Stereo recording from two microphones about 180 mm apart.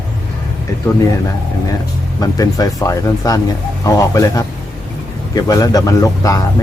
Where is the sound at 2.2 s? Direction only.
20° left (ahead or behind).